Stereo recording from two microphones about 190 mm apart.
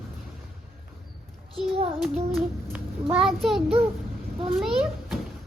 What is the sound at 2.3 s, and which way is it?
A woman's voice, 5° right (ahead or behind).